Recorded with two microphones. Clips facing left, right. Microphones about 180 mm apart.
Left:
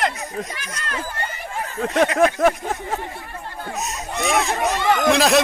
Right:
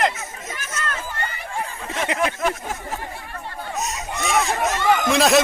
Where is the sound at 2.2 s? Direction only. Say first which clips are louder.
Left 6 dB; 45° left (ahead or behind).